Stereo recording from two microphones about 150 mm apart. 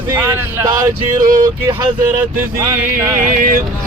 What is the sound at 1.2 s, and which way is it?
Speech, 65° right (ahead or behind).